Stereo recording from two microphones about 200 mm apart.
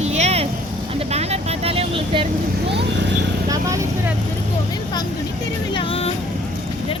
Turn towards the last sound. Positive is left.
turn(degrees=30)  # may be behind; listen again after turning